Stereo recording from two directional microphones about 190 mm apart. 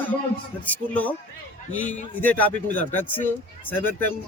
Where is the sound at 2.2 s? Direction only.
10° left (ahead or behind).